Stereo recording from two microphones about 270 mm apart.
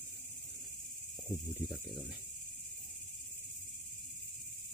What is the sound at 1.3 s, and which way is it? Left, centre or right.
Speech, centre.